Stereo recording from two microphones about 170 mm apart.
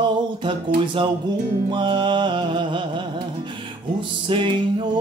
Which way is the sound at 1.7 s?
25° right (ahead or behind).